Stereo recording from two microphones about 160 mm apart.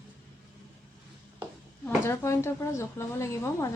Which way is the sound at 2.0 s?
15° left (ahead or behind).